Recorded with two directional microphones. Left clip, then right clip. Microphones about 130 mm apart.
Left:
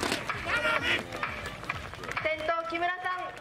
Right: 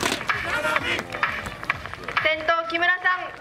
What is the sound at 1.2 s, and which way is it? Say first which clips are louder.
Run: right 9 dB; 35° right (ahead or behind).